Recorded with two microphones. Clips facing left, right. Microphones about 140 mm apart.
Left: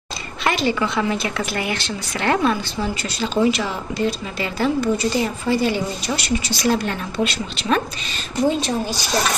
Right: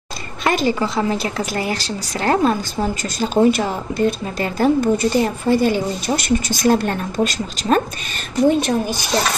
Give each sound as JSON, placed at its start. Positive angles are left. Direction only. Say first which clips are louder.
{"t": 0.5, "sound": "a woman's voice", "louder": "right 2 dB", "side_deg": -45}
{"t": 8.5, "sound": "speech", "louder": "right 5 dB", "side_deg": -55}